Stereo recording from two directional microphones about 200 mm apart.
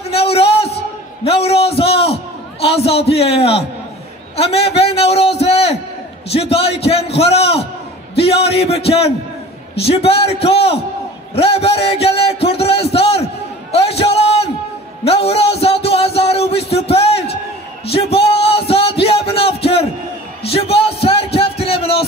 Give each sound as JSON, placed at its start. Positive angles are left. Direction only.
{"t": 0.1, "sound": "a sound", "side_deg": 30}
{"t": 2.6, "sound": "a man's voice", "side_deg": 30}
{"t": 13.7, "sound": "a sound", "side_deg": 30}
{"t": 15.0, "sound": "music", "side_deg": 30}
{"t": 16.2, "sound": "speech", "side_deg": 30}
{"t": 20.4, "sound": "music", "side_deg": 30}